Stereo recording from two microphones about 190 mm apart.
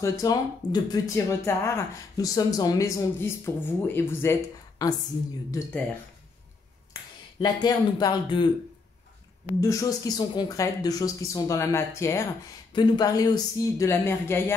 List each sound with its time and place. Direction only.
0.0 s speech: 20° left (ahead or behind)
6.9 s finger snapping: 25° left (ahead or behind)
7.6 s speech: 20° left (ahead or behind)
9.6 s speech: 15° left (ahead or behind)